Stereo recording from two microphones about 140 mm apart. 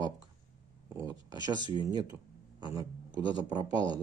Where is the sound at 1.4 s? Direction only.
30° right (ahead or behind).